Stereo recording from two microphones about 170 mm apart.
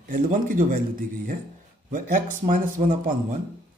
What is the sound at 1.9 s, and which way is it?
Speech, 50° right (ahead or behind).